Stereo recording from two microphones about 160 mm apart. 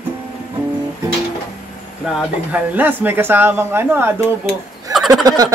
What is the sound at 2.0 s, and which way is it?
Speech, 5° right (ahead or behind).